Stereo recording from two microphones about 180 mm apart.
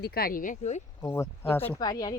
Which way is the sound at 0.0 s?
60° left (ahead or behind).